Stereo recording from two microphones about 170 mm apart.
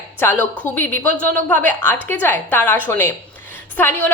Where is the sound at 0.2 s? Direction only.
10° left (ahead or behind).